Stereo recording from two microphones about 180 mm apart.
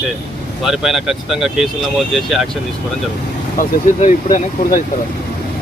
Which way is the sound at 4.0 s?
45° left (ahead or behind).